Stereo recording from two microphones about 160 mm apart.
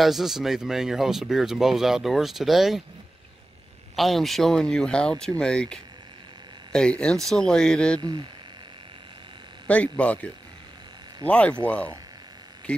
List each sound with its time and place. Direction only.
0.0 s speech: centre (ahead or behind)
3.9 s speech: centre (ahead or behind)
8.0 s speech: 30° right (ahead or behind)
9.7 s speech: 10° left (ahead or behind)